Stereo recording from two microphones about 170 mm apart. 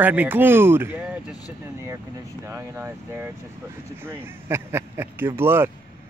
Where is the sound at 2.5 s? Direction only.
15° right (ahead or behind).